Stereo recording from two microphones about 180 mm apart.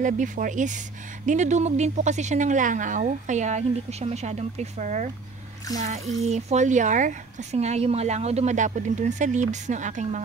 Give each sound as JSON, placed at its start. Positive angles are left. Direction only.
{"t": 0.0, "sound": "speech", "side_deg": -45}